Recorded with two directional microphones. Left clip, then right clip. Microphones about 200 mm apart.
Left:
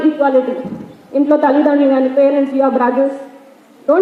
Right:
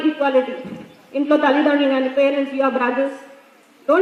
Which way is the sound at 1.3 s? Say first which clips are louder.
Left 3 dB; 40° right (ahead or behind).